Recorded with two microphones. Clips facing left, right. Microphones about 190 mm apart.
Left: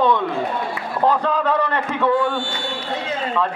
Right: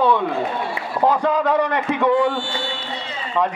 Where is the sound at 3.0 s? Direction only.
50° left (ahead or behind).